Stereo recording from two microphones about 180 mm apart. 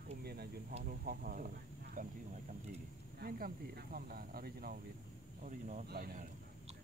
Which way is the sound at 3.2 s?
55° right (ahead or behind).